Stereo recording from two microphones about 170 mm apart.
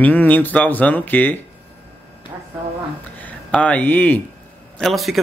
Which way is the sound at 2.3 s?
15° right (ahead or behind).